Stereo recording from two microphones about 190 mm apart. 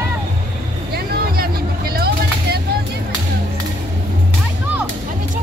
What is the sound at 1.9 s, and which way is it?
Vehicle, 55° right (ahead or behind).